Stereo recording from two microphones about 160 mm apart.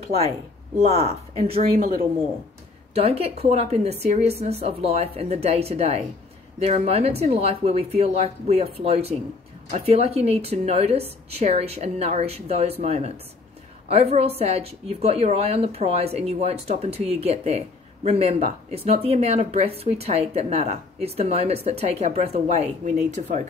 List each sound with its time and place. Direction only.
0.7 s a woman's voice: 40° right (ahead or behind)
2.9 s a woman's voice: 40° right (ahead or behind)